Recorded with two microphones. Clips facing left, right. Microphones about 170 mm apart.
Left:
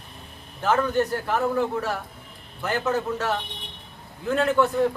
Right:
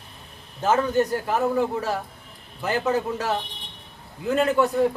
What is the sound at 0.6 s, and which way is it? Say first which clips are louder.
A man's voice: right 1 dB; 20° right (ahead or behind).